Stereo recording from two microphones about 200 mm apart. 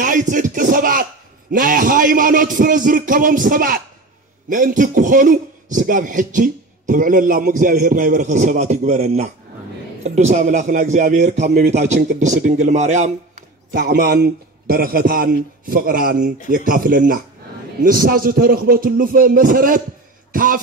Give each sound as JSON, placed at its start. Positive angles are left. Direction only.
{"t": 0.0, "sound": "a man's voice", "side_deg": -40}
{"t": 13.7, "sound": "a man's voice", "side_deg": -55}